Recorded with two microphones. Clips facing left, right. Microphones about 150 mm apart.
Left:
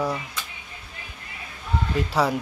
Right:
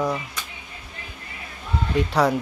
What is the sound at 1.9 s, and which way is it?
Speech, 5° left (ahead or behind).